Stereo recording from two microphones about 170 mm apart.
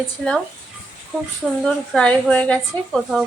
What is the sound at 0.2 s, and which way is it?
A woman's voice, 5° left (ahead or behind).